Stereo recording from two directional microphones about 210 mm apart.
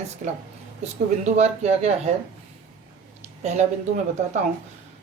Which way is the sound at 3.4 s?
35° right (ahead or behind).